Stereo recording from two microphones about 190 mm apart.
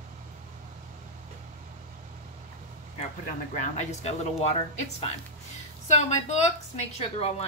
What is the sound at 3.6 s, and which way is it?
A woman's voice, 35° left (ahead or behind).